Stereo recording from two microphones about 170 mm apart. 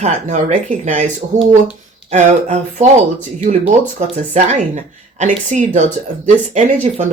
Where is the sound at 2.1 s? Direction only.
45° right (ahead or behind).